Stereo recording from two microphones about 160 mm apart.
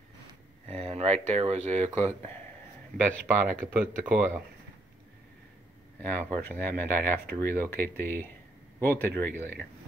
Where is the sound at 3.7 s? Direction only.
10° right (ahead or behind).